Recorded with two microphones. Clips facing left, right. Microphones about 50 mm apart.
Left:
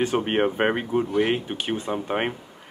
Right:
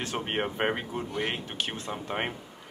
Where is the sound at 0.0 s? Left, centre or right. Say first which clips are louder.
Left 9 dB; centre.